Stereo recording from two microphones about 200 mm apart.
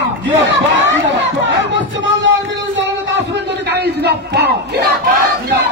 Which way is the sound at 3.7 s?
55° right (ahead or behind).